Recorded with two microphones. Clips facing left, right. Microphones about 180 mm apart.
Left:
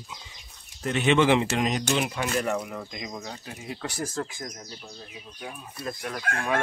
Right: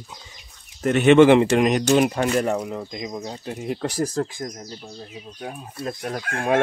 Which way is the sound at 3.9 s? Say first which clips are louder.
Right 7 dB; 35° right (ahead or behind).